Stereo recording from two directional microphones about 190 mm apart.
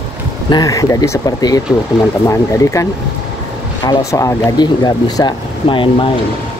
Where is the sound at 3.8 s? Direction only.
15° left (ahead or behind).